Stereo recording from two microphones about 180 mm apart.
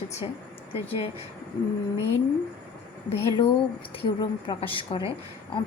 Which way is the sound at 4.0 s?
30° left (ahead or behind).